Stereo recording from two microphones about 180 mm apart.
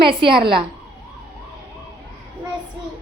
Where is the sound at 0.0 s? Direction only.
30° right (ahead or behind).